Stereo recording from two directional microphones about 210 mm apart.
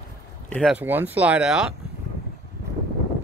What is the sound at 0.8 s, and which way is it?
Speech, 10° right (ahead or behind).